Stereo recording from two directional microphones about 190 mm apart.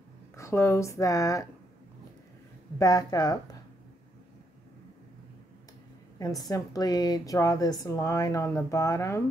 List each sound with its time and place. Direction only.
0.4 s a woman's voice: 15° left (ahead or behind)
2.8 s speech: 20° left (ahead or behind)
6.1 s a woman's voice: 20° left (ahead or behind)